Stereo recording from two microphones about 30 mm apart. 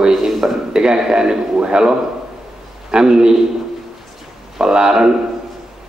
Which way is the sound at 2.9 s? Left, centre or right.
Right.